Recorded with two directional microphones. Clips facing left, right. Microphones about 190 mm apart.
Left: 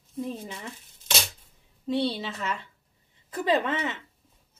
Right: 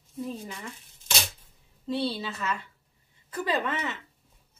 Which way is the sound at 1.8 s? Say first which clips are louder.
Left 2 dB; 20° left (ahead or behind).